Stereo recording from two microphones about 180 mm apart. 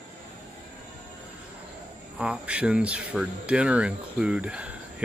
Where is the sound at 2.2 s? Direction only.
5° right (ahead or behind).